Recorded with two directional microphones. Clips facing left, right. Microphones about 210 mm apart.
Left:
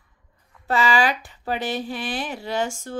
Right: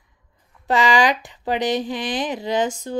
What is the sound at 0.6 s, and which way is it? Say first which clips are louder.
Speech: right 3 dB; 20° right (ahead or behind).